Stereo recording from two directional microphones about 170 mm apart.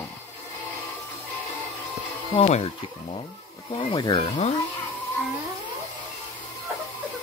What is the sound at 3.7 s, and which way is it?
Speech, 25° left (ahead or behind).